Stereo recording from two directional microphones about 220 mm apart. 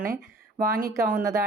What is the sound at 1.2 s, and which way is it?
Speech, 15° right (ahead or behind).